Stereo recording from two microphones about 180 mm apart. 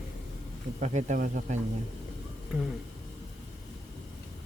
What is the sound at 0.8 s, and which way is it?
Speech, 40° right (ahead or behind).